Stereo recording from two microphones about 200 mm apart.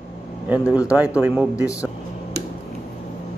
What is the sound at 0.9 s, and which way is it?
Speech, 5° right (ahead or behind).